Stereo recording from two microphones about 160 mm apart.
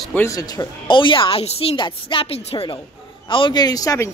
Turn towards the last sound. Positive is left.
turn(degrees=20)  # may be behind; listen again after turning